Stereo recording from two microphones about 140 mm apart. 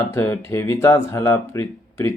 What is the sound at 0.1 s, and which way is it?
Speech, 15° left (ahead or behind).